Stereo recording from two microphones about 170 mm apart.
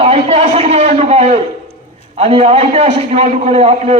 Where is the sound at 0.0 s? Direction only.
35° right (ahead or behind).